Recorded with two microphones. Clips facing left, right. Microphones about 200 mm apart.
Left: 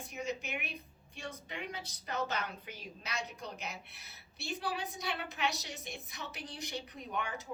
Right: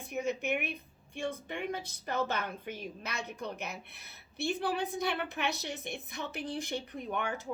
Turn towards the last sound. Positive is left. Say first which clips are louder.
# right 4 dB
turn(degrees=-55)  # may be behind; listen again after turning